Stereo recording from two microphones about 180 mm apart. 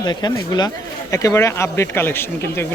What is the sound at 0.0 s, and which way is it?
Speech, 25° left (ahead or behind).